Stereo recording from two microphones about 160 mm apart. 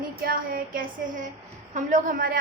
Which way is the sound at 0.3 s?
65° right (ahead or behind).